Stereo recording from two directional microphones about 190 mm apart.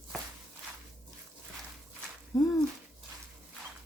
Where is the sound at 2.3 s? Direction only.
20° left (ahead or behind).